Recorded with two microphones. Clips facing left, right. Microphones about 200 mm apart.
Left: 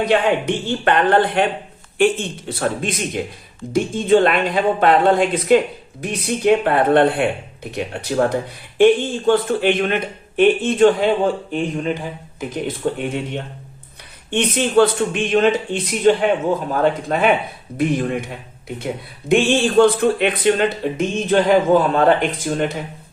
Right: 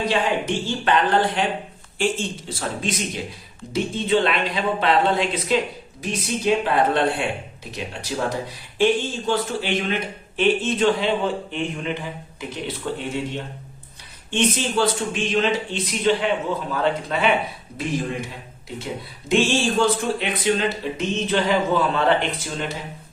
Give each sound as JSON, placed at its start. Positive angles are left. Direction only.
{"t": 0.1, "sound": "a woman's voice", "side_deg": 60}
{"t": 11.5, "sound": "a woman's voice", "side_deg": 40}
{"t": 19.3, "sound": "a woman's voice", "side_deg": 55}